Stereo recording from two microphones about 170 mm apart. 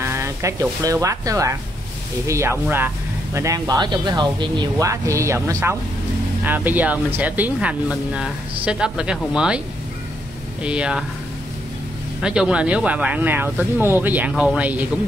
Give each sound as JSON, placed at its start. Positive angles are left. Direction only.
{"t": 0.0, "sound": "speech", "side_deg": -15}
{"t": 10.6, "sound": "speech", "side_deg": -5}
{"t": 12.2, "sound": "speech", "side_deg": -5}